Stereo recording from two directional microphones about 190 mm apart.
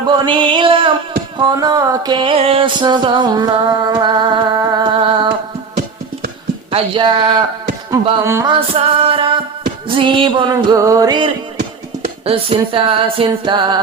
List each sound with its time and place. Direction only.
0.0 s a sound: 25° right (ahead or behind)
1.4 s music: 20° right (ahead or behind)
6.7 s music: 25° right (ahead or behind)
7.9 s carnatic music: 20° right (ahead or behind)
8.7 s music: 30° right (ahead or behind)
12.0 s music: 30° right (ahead or behind)